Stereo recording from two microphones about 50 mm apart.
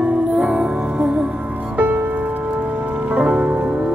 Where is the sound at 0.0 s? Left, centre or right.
Right.